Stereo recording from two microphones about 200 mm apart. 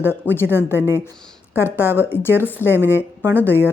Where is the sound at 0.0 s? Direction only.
10° left (ahead or behind).